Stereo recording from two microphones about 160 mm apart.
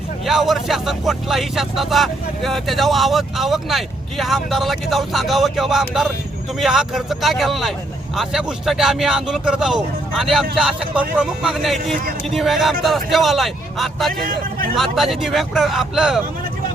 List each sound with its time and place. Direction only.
0.3 s speech: centre (ahead or behind)
14.1 s speech: 60° right (ahead or behind)
14.8 s speech: centre (ahead or behind)